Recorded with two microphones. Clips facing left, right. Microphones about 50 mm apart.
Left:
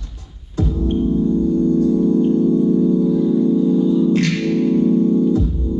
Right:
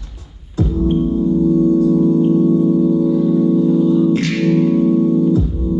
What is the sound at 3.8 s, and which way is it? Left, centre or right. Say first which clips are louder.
Music: right 2 dB; centre.